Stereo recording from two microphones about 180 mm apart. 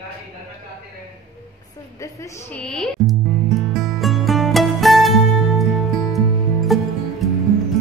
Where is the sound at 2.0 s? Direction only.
15° left (ahead or behind).